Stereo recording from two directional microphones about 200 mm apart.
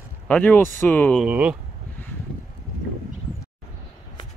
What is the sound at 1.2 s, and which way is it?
Speech, 5° right (ahead or behind).